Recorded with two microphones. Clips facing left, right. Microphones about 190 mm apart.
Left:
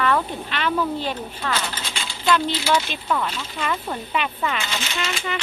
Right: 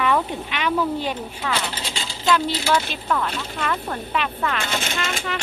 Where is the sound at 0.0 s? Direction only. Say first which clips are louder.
Right 1 dB; 10° right (ahead or behind).